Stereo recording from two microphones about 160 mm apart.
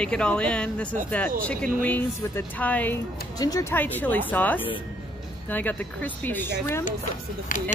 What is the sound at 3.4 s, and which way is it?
Speech, 25° left (ahead or behind).